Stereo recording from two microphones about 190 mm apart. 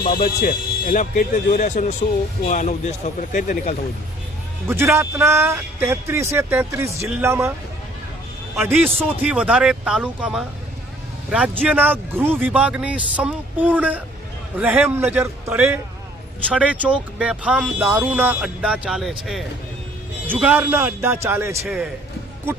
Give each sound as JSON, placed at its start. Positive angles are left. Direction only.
{"t": 0.0, "sound": "a man's voice", "side_deg": 50}
{"t": 4.7, "sound": "a man's voice", "side_deg": -15}
{"t": 9.2, "sound": "a man's voice", "side_deg": -5}